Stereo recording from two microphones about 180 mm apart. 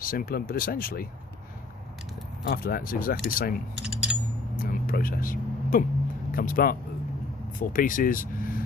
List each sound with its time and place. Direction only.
0.0 s speech: 55° left (ahead or behind)
2.5 s speech: 50° left (ahead or behind)
3.8 s coin: 5° right (ahead or behind)
4.5 s a sound: 50° left (ahead or behind)
6.3 s speech: 50° left (ahead or behind)